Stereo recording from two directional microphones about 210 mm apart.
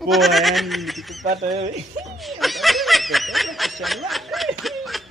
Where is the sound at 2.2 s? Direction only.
Centre (ahead or behind).